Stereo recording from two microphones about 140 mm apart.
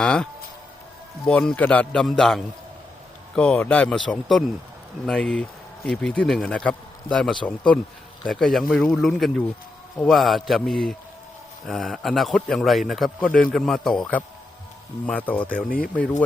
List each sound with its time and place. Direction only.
0.0 s speech: 5° left (ahead or behind)
15.4 s speech: 90° left